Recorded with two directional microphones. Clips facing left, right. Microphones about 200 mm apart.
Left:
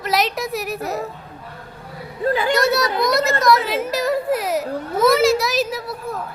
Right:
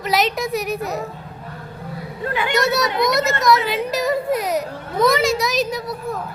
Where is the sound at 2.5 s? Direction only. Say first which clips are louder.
Left 1 dB; centre (ahead or behind).